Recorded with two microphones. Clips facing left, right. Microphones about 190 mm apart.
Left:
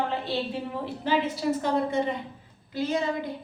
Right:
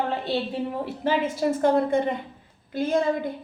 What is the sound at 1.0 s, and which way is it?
A woman's voice, 50° right (ahead or behind).